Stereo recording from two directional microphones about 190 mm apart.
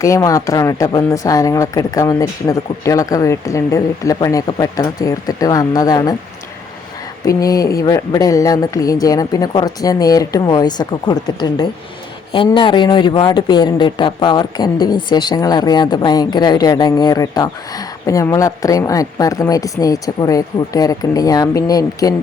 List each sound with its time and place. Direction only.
0.0 s speech: 15° left (ahead or behind)
7.3 s speech: 20° left (ahead or behind)